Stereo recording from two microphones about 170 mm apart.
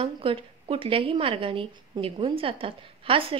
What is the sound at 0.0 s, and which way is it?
A woman's voice, 30° right (ahead or behind).